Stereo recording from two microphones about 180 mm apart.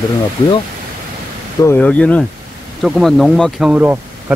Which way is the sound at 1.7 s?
5° left (ahead or behind).